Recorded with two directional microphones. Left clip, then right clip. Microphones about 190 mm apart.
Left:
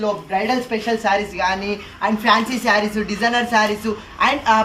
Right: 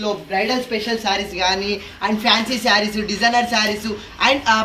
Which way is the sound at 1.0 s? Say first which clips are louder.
Left 1 dB; 25° left (ahead or behind).